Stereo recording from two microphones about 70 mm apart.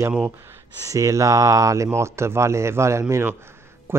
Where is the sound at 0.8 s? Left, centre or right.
Right.